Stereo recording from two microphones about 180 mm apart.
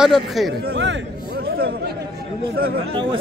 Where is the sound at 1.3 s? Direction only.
60° right (ahead or behind).